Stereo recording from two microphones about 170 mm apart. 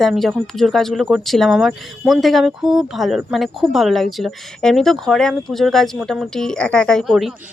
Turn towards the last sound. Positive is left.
turn(degrees=0)  # may be behind; listen again after turning